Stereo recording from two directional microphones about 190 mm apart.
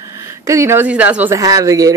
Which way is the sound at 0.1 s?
15° right (ahead or behind).